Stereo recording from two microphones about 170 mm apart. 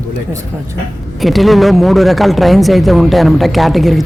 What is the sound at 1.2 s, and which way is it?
Speech, centre (ahead or behind).